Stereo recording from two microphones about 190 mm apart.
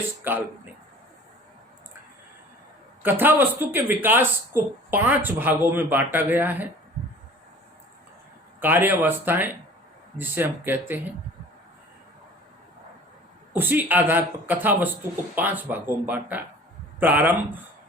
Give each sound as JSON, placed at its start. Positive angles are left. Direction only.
{"t": 0.3, "sound": "speech", "side_deg": -10}
{"t": 3.0, "sound": "speech", "side_deg": -10}
{"t": 8.6, "sound": "speech", "side_deg": -10}
{"t": 13.5, "sound": "speech", "side_deg": -10}